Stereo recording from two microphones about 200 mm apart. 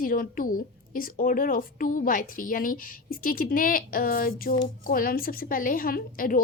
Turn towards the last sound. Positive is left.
turn(degrees=45)  # may be behind; listen again after turning